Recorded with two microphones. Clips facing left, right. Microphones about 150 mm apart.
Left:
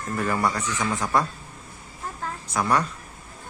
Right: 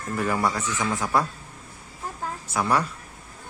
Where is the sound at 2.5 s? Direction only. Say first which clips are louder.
Even; 10° right (ahead or behind).